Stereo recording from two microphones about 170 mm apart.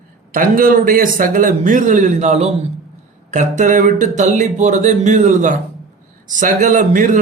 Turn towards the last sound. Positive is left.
turn(degrees=-50)  # may be behind; listen again after turning